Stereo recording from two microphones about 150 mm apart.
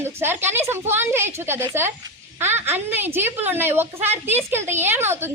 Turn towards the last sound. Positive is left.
turn(degrees=-15)  # may be behind; listen again after turning